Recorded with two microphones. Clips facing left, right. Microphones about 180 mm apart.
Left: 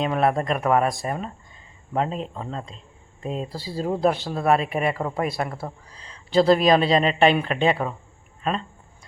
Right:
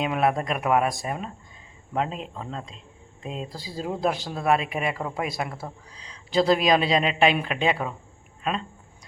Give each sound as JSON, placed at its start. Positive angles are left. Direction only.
{"t": 0.0, "sound": "speech", "side_deg": -5}
{"t": 3.2, "sound": "speech", "side_deg": 45}
{"t": 3.5, "sound": "speech", "side_deg": 0}